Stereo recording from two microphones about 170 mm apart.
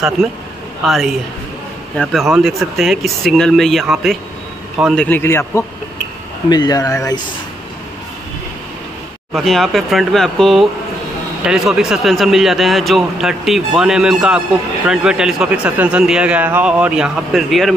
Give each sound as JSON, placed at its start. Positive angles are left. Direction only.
{"t": 0.8, "sound": "a man's voice", "side_deg": 0}
{"t": 9.3, "sound": "a man's voice", "side_deg": 0}